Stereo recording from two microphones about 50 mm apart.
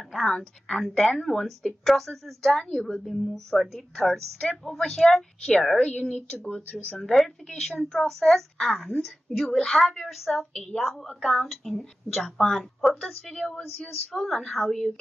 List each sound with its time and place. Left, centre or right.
0.1 s a woman's voice: centre
1.0 s a woman's voice: centre
3.1 s a woman's voice: centre
5.8 s a woman's voice: left
7.4 s a woman's voice: centre
11.1 s a woman's voice: centre